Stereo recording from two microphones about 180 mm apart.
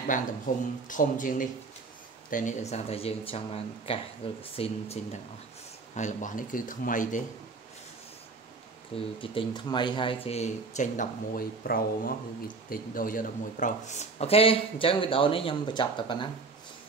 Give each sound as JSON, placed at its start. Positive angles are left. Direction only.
{"t": 0.8, "sound": "speech", "side_deg": 45}
{"t": 8.9, "sound": "speech", "side_deg": 30}